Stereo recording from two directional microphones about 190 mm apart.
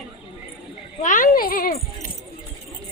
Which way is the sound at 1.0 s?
45° left (ahead or behind).